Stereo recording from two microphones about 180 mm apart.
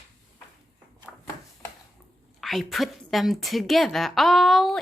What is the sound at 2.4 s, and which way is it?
A woman's voice, centre (ahead or behind).